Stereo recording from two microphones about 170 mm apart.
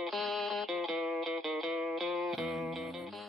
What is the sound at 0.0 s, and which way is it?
Music, centre (ahead or behind).